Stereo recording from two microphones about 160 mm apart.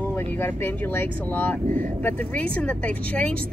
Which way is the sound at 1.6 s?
50° right (ahead or behind).